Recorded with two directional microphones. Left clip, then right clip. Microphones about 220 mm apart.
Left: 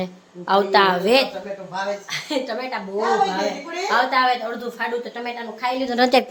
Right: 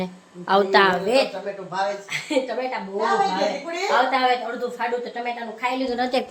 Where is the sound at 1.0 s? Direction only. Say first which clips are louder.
Left 3 dB; 35° left (ahead or behind).